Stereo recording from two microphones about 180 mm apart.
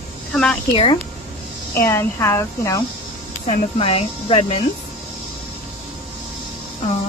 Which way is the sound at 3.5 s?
30° left (ahead or behind).